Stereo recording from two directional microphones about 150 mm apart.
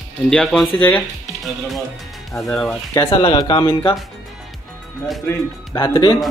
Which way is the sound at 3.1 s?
30° left (ahead or behind).